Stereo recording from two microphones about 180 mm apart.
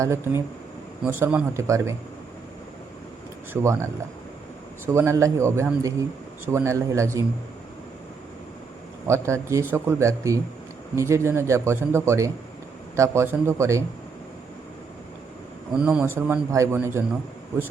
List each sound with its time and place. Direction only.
0.0 s a man's voice: 15° right (ahead or behind)
3.5 s a man's voice: 15° right (ahead or behind)
4.9 s a man's voice: 15° right (ahead or behind)
9.0 s a man's voice: 15° right (ahead or behind)
15.8 s a man's voice: 10° right (ahead or behind)